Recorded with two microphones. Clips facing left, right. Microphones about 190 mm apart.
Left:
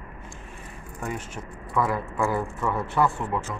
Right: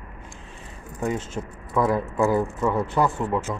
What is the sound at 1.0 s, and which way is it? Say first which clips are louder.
Speech: right 6 dB; 20° right (ahead or behind).